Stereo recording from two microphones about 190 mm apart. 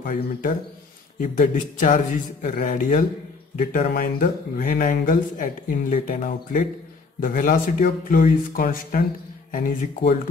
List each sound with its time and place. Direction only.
0.0 s speech: 45° left (ahead or behind)